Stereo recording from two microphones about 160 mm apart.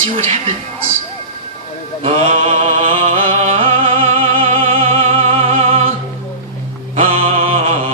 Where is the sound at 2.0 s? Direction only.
45° right (ahead or behind).